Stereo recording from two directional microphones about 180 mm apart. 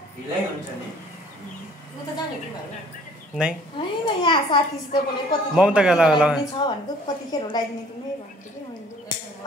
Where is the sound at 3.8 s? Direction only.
25° left (ahead or behind).